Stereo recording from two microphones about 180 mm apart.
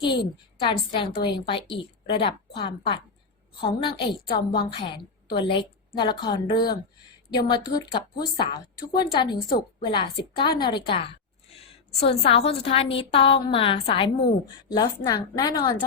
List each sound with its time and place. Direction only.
0.6 s a woman's voice: 25° left (ahead or behind)